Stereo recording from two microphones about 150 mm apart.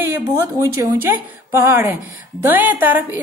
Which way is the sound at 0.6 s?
15° right (ahead or behind).